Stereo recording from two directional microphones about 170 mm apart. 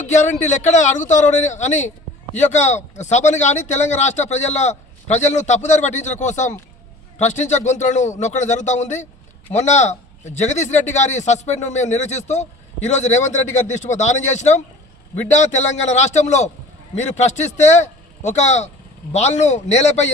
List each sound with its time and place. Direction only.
0.0 s a man's voice: 45° left (ahead or behind)